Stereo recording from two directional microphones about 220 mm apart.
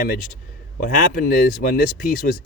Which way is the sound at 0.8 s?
40° left (ahead or behind).